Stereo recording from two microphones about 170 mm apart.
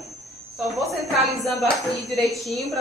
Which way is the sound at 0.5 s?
Centre (ahead or behind).